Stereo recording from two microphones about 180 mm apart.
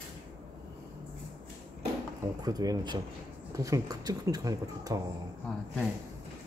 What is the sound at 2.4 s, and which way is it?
Speech, 20° right (ahead or behind).